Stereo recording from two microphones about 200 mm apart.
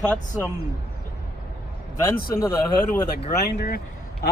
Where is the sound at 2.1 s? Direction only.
45° left (ahead or behind).